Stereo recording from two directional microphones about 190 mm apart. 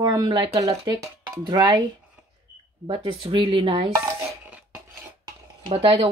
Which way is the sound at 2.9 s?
30° right (ahead or behind).